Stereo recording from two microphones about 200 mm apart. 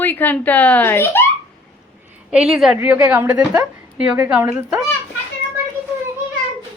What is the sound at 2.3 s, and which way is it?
A woman's voice, 5° right (ahead or behind).